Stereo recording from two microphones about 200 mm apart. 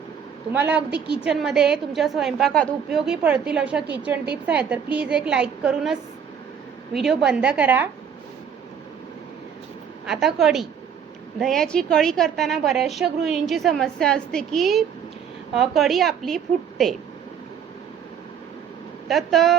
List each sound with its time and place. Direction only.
0.5 s a woman's voice: 10° right (ahead or behind)
10.1 s a woman's voice: centre (ahead or behind)
19.0 s a woman's voice: centre (ahead or behind)